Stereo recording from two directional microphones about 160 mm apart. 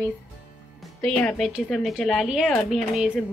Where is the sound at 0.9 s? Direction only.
5° left (ahead or behind).